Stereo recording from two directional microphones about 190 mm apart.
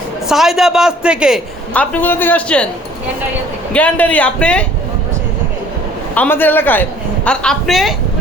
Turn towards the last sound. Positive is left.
turn(degrees=0)  # may be behind; listen again after turning